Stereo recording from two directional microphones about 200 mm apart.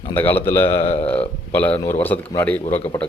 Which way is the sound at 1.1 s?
10° left (ahead or behind).